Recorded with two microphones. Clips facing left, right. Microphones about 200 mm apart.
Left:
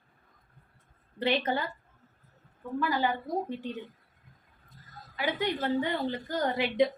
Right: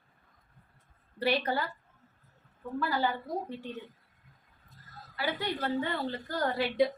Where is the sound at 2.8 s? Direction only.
15° left (ahead or behind).